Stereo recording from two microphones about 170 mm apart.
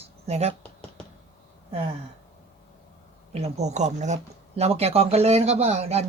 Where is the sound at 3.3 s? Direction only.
40° right (ahead or behind).